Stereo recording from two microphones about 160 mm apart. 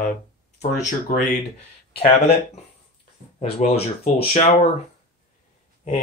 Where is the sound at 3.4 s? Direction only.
45° left (ahead or behind).